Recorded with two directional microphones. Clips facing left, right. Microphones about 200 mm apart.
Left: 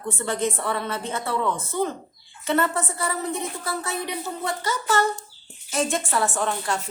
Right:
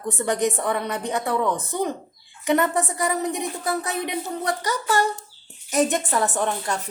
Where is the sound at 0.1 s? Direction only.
15° right (ahead or behind).